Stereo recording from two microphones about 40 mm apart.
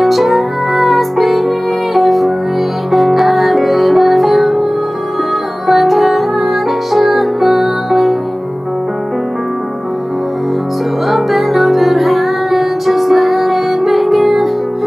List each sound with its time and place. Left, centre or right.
0.0 s music: centre
5.7 s music: centre
11.1 s music: centre